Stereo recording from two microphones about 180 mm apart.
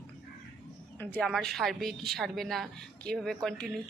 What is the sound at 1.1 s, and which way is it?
A woman's voice, centre (ahead or behind).